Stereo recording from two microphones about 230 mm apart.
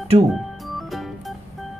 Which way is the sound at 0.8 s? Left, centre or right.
Centre.